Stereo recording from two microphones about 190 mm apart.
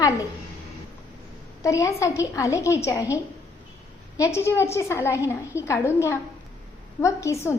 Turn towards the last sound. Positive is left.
turn(degrees=15)  # may be behind; listen again after turning